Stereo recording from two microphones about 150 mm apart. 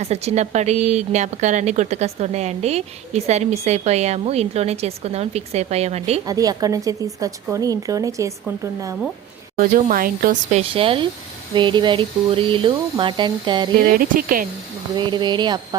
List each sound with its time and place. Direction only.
0.0 s a woman's voice: 45° right (ahead or behind)
6.2 s a woman's voice: 25° right (ahead or behind)
9.6 s speech: 70° right (ahead or behind)
10.5 s speech: 40° right (ahead or behind)
13.7 s speech: 70° right (ahead or behind)
14.9 s a woman's voice: 30° right (ahead or behind)